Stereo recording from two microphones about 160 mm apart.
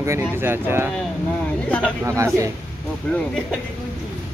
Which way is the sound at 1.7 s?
10° left (ahead or behind).